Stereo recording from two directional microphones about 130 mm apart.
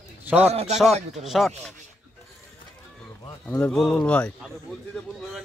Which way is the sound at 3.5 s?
10° left (ahead or behind).